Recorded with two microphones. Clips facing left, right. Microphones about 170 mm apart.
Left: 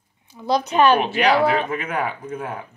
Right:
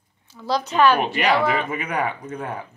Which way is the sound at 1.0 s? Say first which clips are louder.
Left 2 dB; centre (ahead or behind).